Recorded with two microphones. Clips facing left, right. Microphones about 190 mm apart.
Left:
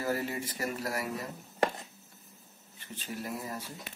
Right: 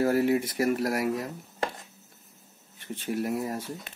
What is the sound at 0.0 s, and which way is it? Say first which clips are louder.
Speech: right 10 dB; 65° right (ahead or behind).